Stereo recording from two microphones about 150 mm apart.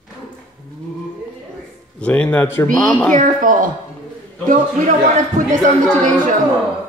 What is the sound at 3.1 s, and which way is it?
Speech, 60° right (ahead or behind).